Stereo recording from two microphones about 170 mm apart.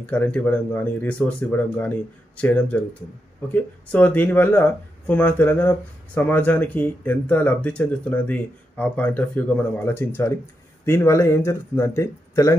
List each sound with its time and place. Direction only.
0.0 s speech: 10° left (ahead or behind)